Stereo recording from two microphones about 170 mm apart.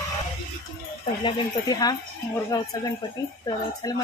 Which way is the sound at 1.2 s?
25° left (ahead or behind).